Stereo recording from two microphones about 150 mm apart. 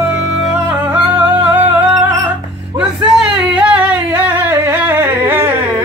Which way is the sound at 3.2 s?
10° right (ahead or behind).